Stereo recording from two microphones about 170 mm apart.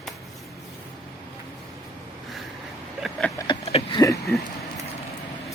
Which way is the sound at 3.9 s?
20° left (ahead or behind).